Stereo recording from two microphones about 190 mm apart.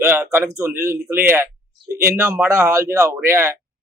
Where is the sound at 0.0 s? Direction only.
15° right (ahead or behind).